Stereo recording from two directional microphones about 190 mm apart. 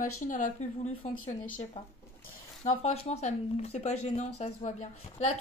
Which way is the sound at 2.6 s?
35° left (ahead or behind).